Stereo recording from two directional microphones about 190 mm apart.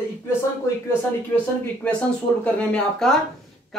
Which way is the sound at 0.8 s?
10° left (ahead or behind).